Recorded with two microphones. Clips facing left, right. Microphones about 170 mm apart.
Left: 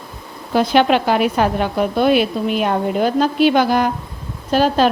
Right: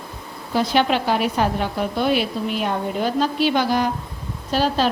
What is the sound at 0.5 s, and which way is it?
A woman's voice, 65° left (ahead or behind).